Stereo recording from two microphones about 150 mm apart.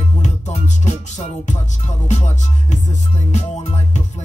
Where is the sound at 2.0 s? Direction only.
50° left (ahead or behind).